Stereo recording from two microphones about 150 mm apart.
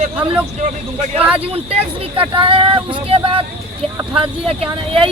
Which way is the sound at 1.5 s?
40° right (ahead or behind).